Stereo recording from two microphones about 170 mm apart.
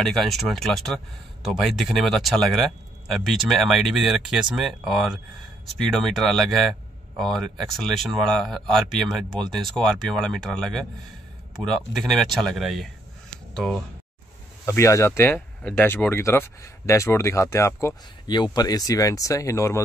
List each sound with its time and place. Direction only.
0.0 s speech: centre (ahead or behind)
14.7 s speech: 15° left (ahead or behind)